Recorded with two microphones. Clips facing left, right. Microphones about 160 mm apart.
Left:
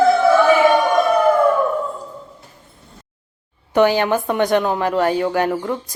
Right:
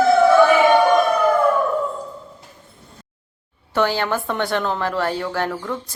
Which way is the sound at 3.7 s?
15° left (ahead or behind).